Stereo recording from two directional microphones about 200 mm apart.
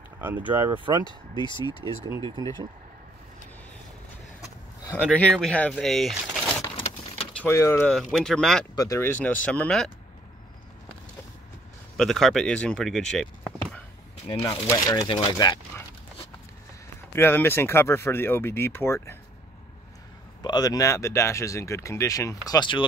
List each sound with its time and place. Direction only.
0.2 s speech: 10° right (ahead or behind)
0.7 s speech: 25° right (ahead or behind)
1.0 s speech: 20° left (ahead or behind)
2.4 s speech: 20° right (ahead or behind)
4.8 s speech: 5° left (ahead or behind)
7.3 s speech: 10° left (ahead or behind)
7.9 s speech: centre (ahead or behind)
8.7 s speech: 15° left (ahead or behind)
12.0 s speech: centre (ahead or behind)
14.7 s speech: 15° left (ahead or behind)
17.1 s speech: 10° left (ahead or behind)
20.4 s speech: 20° left (ahead or behind)